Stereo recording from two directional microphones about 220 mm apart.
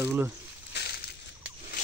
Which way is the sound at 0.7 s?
50° left (ahead or behind).